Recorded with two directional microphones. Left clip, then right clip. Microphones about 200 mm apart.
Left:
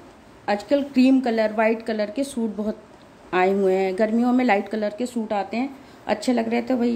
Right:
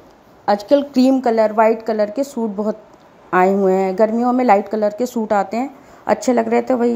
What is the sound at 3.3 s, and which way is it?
Speech, 20° right (ahead or behind).